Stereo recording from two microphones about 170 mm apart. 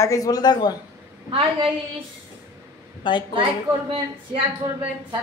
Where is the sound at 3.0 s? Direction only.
30° left (ahead or behind).